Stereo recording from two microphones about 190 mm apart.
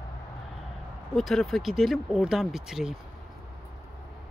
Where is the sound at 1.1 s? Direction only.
Centre (ahead or behind).